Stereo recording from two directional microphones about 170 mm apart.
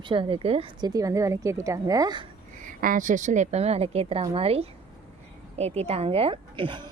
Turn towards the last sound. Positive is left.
turn(degrees=-30)  # may be behind; listen again after turning